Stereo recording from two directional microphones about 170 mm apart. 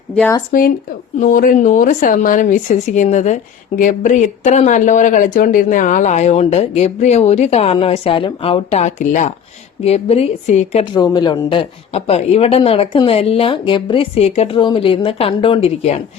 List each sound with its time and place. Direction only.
0.5 s a woman's voice: 55° left (ahead or behind)
10.9 s a woman's voice: 25° left (ahead or behind)